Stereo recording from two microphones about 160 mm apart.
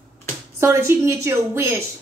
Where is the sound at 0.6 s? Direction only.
15° right (ahead or behind).